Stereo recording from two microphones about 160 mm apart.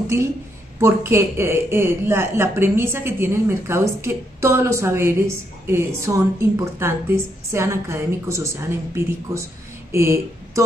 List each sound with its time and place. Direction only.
0.7 s a man's voice: 15° right (ahead or behind)